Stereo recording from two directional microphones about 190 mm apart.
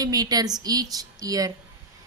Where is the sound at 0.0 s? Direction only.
20° right (ahead or behind).